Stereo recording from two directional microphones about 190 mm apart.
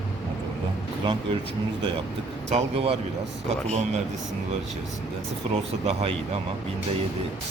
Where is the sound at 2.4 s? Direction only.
35° right (ahead or behind).